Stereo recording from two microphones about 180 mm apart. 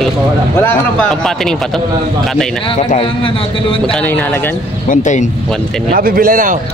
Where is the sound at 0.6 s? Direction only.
5° left (ahead or behind).